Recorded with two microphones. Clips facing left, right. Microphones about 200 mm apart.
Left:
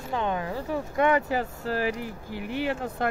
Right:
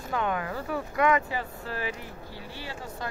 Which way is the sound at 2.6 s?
60° left (ahead or behind).